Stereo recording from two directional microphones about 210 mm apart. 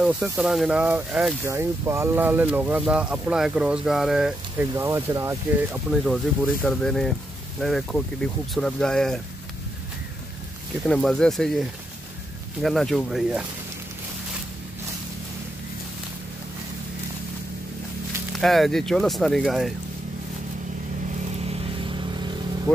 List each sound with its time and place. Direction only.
0.0 s speech: 5° right (ahead or behind)
6.0 s speech: centre (ahead or behind)
10.9 s speech: centre (ahead or behind)
18.3 s speech: centre (ahead or behind)
21.5 s vehicle: 25° right (ahead or behind)